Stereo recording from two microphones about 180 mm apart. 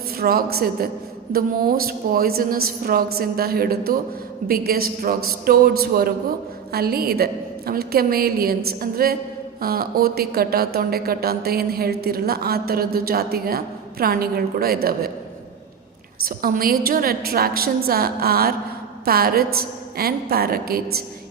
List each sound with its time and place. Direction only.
0.2 s a woman's voice: 60° right (ahead or behind)
16.2 s a woman's voice: 55° right (ahead or behind)